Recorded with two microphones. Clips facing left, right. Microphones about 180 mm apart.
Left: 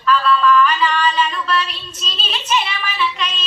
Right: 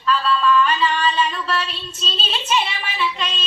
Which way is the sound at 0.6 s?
30° right (ahead or behind).